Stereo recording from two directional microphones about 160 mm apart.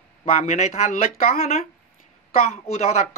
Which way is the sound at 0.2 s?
45° left (ahead or behind).